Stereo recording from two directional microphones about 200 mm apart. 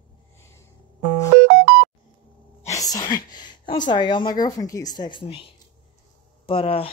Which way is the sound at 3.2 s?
20° left (ahead or behind).